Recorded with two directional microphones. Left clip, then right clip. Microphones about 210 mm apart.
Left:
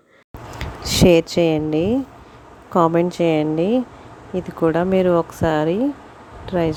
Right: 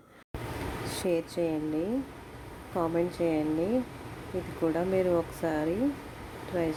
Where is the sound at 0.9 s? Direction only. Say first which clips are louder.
Left 17 dB; 45° left (ahead or behind).